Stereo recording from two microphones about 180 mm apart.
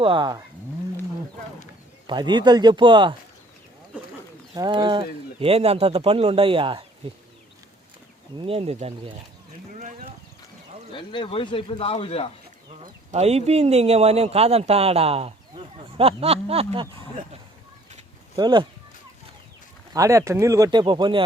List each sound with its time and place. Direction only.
0.0 s speech: 25° right (ahead or behind)
2.0 s speech: 25° right (ahead or behind)
4.5 s speech: 25° right (ahead or behind)
8.4 s speech: 30° right (ahead or behind)
10.9 s speech: 30° left (ahead or behind)
12.8 s speech: 40° right (ahead or behind)
18.3 s speech: 25° right (ahead or behind)
19.9 s speech: 15° right (ahead or behind)